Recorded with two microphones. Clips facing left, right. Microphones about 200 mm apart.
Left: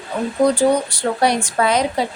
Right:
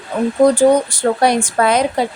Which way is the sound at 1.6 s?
55° right (ahead or behind).